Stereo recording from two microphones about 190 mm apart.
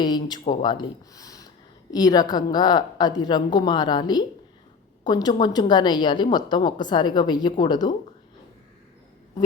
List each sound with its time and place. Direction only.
0.0 s a woman's voice: 20° left (ahead or behind)